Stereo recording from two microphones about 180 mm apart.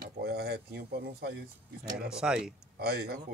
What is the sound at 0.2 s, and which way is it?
Speech, 65° right (ahead or behind).